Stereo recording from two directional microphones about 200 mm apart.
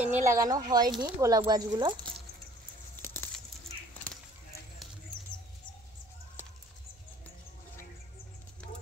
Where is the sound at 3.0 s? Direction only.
10° left (ahead or behind).